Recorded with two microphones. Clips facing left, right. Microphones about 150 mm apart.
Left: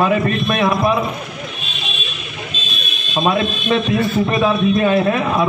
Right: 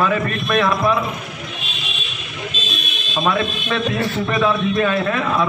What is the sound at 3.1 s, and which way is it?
A man's voice, 25° left (ahead or behind).